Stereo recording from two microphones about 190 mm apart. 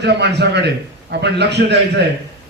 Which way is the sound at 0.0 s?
65° right (ahead or behind).